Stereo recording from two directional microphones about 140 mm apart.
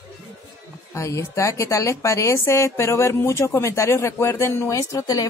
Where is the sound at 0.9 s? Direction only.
20° left (ahead or behind).